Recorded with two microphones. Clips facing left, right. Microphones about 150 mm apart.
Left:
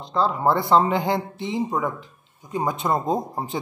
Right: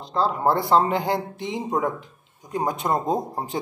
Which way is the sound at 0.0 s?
5° right (ahead or behind).